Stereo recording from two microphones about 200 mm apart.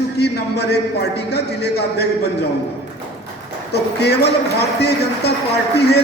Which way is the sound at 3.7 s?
55° left (ahead or behind).